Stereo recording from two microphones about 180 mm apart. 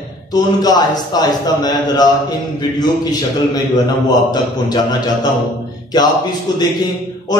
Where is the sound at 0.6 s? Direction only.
20° left (ahead or behind).